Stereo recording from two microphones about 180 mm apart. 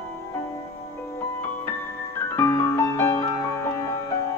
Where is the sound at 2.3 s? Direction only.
15° left (ahead or behind).